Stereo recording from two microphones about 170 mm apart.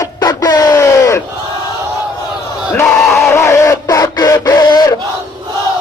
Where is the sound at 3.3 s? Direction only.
15° left (ahead or behind).